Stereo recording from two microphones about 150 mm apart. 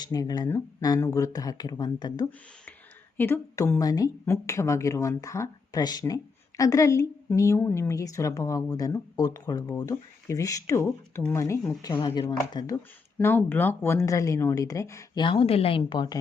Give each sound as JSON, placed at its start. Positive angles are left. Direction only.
{"t": 0.0, "sound": "a woman's voice", "side_deg": 25}
{"t": 3.2, "sound": "a woman's voice", "side_deg": 15}
{"t": 13.1, "sound": "a woman's voice", "side_deg": 10}
{"t": 15.2, "sound": "speech", "side_deg": 35}